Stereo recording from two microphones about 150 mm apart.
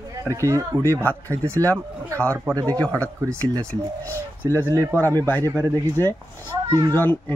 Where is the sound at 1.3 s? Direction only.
15° right (ahead or behind).